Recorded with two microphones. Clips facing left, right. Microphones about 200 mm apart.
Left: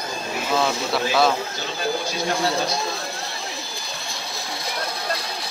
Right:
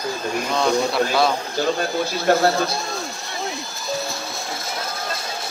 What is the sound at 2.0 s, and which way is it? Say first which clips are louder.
Speech: right 6 dB; 60° right (ahead or behind).